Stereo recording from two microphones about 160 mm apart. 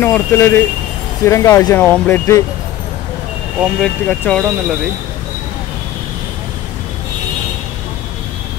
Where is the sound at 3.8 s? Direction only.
10° left (ahead or behind).